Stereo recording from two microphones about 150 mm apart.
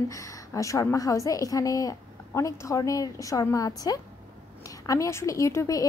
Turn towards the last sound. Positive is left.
turn(degrees=20)  # may be behind; listen again after turning